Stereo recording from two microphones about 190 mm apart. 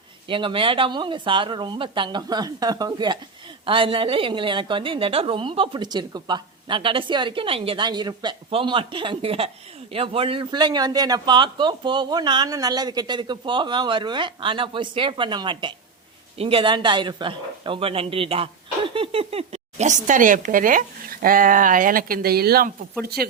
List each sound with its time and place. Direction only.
0.3 s a woman's voice: 25° right (ahead or behind); by 23.3 s 55° right (ahead or behind)